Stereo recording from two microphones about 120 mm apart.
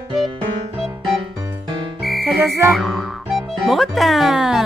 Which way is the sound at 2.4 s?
25° right (ahead or behind).